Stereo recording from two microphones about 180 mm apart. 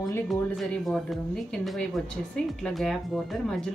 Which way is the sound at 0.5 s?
Centre (ahead or behind).